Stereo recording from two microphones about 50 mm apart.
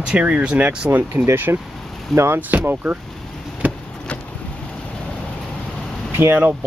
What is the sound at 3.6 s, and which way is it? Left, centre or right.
Vehicle, right.